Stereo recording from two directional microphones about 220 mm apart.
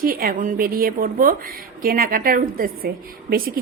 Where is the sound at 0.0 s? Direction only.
40° right (ahead or behind).